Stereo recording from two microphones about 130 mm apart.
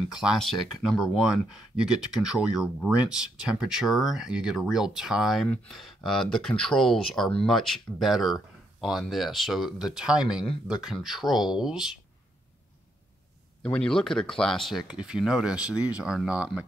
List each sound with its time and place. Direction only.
0.1 s speech: 5° right (ahead or behind)
13.6 s speech: 5° left (ahead or behind)